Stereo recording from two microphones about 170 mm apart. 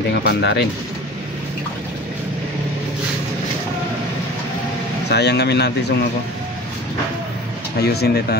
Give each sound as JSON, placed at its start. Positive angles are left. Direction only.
{"t": 0.2, "sound": "speech", "side_deg": 75}
{"t": 5.1, "sound": "speech", "side_deg": 75}
{"t": 7.8, "sound": "speech", "side_deg": 70}